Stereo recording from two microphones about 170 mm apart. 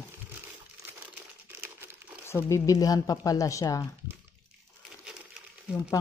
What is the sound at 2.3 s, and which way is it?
Speech, 15° left (ahead or behind).